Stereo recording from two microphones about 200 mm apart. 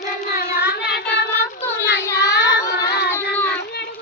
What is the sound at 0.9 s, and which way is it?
Child singing, 55° left (ahead or behind).